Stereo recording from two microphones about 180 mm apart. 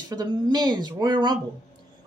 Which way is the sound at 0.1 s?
20° right (ahead or behind).